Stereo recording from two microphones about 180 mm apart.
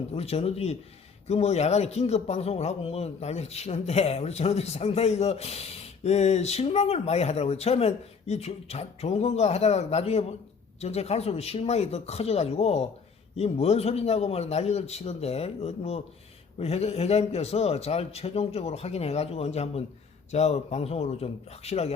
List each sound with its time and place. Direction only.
0.1 s speech: 35° left (ahead or behind)